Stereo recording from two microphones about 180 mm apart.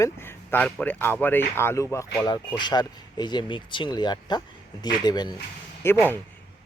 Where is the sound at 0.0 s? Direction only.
15° left (ahead or behind).